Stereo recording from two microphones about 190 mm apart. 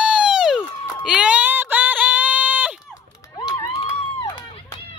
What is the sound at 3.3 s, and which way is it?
Run, 20° left (ahead or behind).